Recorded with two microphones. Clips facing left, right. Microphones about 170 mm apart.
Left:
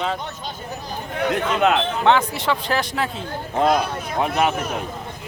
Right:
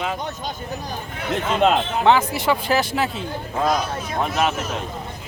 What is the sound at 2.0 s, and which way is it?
Speech, 5° right (ahead or behind).